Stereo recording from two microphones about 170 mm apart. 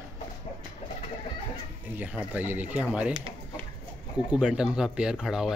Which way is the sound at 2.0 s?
10° right (ahead or behind).